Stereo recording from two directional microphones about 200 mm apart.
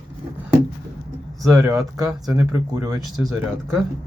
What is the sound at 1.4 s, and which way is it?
Speech, 15° right (ahead or behind).